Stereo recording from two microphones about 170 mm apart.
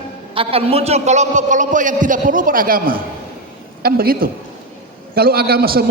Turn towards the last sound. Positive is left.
turn(degrees=-60)  # may be behind; listen again after turning